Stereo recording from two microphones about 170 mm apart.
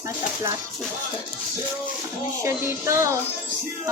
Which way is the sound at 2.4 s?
15° right (ahead or behind).